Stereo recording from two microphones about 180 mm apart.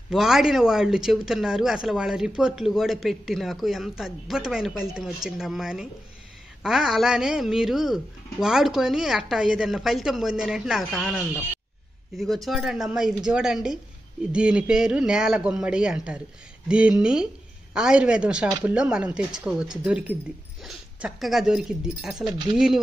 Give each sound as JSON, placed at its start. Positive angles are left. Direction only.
{"t": 0.1, "sound": "speech", "side_deg": 0}